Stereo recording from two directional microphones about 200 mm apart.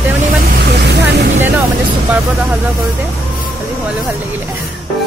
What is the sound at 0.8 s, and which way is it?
Speech, 55° right (ahead or behind).